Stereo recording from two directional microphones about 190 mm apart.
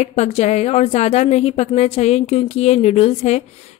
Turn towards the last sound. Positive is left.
turn(degrees=35)  # may be behind; listen again after turning